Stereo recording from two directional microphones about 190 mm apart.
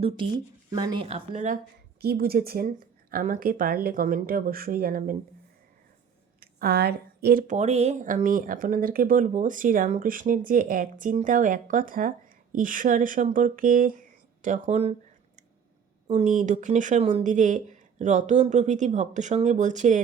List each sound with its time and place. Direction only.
0.7 s speech: 20° right (ahead or behind); by 1.5 s 35° right (ahead or behind)
2.0 s speech: 55° right (ahead or behind)
6.4 s speech: 55° right (ahead or behind); by 14.9 s 35° right (ahead or behind)
16.1 s speech: 40° right (ahead or behind)